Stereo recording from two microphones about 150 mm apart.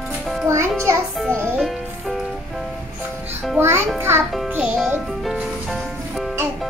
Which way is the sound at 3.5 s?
15° right (ahead or behind).